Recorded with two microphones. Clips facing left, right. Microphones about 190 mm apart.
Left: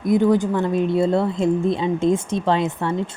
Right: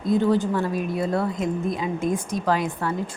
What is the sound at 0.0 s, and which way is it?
A woman's voice, 15° left (ahead or behind).